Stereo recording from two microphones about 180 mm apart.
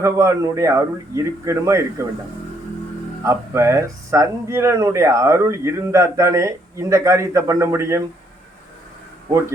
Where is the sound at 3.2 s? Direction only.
15° right (ahead or behind).